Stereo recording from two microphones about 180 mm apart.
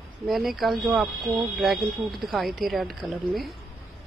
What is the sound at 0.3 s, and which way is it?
Speech, centre (ahead or behind).